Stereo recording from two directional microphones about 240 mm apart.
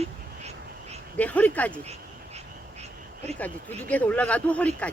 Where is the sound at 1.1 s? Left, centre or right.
Centre.